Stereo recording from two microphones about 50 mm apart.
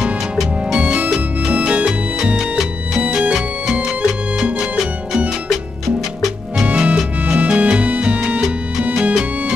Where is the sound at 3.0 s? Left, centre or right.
Right.